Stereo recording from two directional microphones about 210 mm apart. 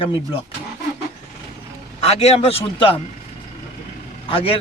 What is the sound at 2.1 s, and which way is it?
Speech, 30° left (ahead or behind).